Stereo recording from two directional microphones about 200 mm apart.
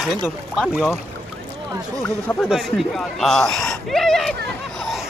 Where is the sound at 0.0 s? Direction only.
Centre (ahead or behind).